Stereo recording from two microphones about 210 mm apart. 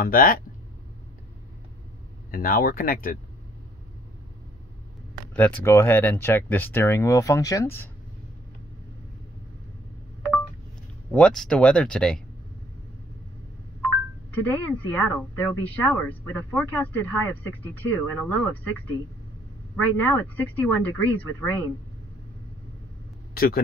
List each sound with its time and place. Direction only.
0.0 s speech: 40° left (ahead or behind)
2.3 s speech: 45° left (ahead or behind)
5.3 s a woman's voice: 10° left (ahead or behind)
11.1 s speech: 5° left (ahead or behind)
14.5 s a woman's voice: 10° left (ahead or behind)
19.7 s a woman's voice: 10° left (ahead or behind)
23.3 s speech: 45° left (ahead or behind)